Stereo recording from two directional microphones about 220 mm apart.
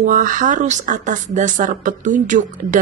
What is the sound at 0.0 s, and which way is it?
Speech, 35° right (ahead or behind).